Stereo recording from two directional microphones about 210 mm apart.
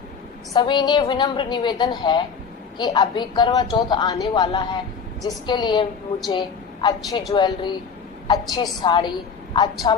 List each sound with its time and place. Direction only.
0.5 s a woman's voice: 20° left (ahead or behind)
6.8 s a woman's voice: 20° left (ahead or behind)